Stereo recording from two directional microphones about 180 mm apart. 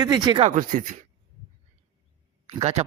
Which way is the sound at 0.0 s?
20° right (ahead or behind).